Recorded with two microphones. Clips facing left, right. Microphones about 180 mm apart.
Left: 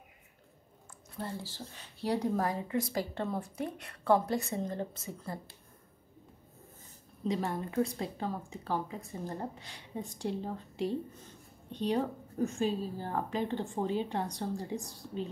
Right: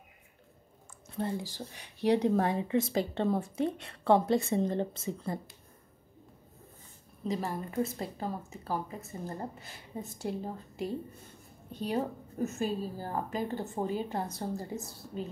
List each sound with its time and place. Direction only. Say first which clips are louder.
1.1 s speech: right 6 dB; 15° right (ahead or behind)
7.2 s a woman's voice: left 1 dB; centre (ahead or behind)